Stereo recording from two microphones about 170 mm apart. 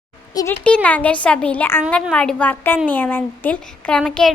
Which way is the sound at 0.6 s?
10° left (ahead or behind).